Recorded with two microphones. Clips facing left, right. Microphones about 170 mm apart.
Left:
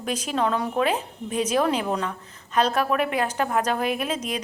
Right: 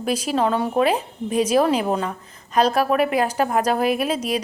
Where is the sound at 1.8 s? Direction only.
30° right (ahead or behind).